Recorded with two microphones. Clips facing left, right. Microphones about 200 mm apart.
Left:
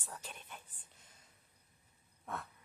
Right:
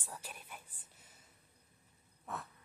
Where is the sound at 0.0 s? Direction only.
10° right (ahead or behind).